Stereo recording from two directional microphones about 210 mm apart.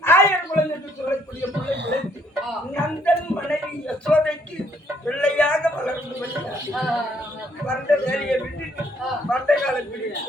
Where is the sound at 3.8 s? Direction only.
5° left (ahead or behind).